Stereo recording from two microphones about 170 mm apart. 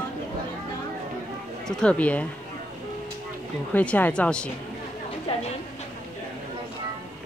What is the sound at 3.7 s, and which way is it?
Speech, 10° left (ahead or behind).